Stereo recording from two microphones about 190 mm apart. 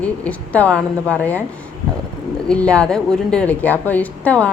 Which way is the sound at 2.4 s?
5° left (ahead or behind).